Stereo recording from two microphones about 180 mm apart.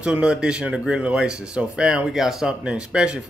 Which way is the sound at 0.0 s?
5° right (ahead or behind).